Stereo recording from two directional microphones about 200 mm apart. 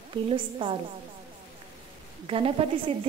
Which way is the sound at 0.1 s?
25° right (ahead or behind).